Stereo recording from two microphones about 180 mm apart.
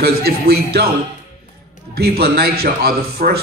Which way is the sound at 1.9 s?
60° right (ahead or behind).